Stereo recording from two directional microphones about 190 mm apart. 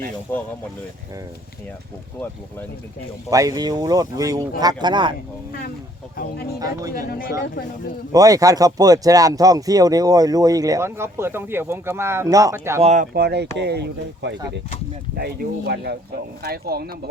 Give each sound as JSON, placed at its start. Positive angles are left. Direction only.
{"t": 0.3, "sound": "speech", "side_deg": 10}
{"t": 3.2, "sound": "speech", "side_deg": -20}
{"t": 5.5, "sound": "speech", "side_deg": 50}
{"t": 6.9, "sound": "speech", "side_deg": 50}
{"t": 8.1, "sound": "speech", "side_deg": -20}
{"t": 12.8, "sound": "speech", "side_deg": -35}
{"t": 13.1, "sound": "speech", "side_deg": -60}